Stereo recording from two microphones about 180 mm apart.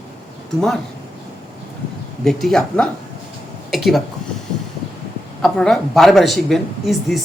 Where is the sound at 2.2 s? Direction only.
Centre (ahead or behind).